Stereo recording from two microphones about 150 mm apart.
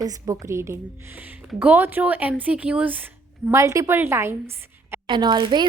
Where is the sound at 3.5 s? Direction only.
20° right (ahead or behind).